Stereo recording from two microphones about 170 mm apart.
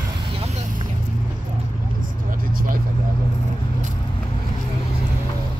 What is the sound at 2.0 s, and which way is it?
Vehicle, 55° right (ahead or behind).